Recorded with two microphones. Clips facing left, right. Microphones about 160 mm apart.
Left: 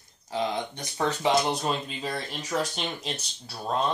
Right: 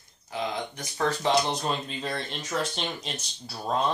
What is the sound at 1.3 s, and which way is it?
Speech, 5° left (ahead or behind).